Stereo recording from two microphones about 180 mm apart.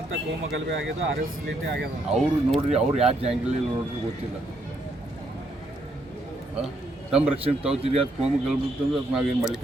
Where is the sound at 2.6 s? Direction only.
35° right (ahead or behind).